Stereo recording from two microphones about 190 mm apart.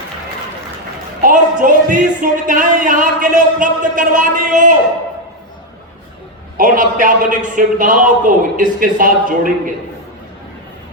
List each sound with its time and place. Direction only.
1.2 s speech: 45° right (ahead or behind)
6.6 s speech: 45° right (ahead or behind)